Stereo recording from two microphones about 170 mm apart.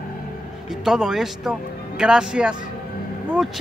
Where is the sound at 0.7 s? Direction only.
5° right (ahead or behind).